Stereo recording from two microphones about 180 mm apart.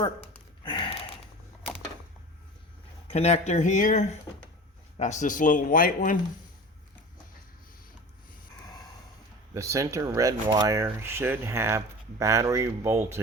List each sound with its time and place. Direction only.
0.6 s a sound: 25° left (ahead or behind)
3.1 s speech: 35° left (ahead or behind)
9.6 s speech: 15° right (ahead or behind)